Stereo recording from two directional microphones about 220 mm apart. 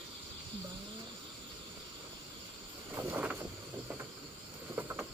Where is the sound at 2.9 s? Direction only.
5° right (ahead or behind).